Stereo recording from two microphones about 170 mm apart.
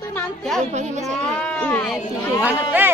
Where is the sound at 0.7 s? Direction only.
40° right (ahead or behind).